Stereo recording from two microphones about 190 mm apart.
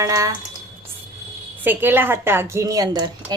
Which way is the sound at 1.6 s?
10° right (ahead or behind).